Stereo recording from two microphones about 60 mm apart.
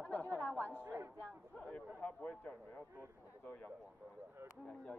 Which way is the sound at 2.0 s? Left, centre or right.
Centre.